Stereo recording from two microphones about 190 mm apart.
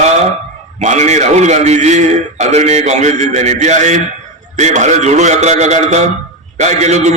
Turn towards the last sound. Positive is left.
turn(degrees=-35)  # may be behind; listen again after turning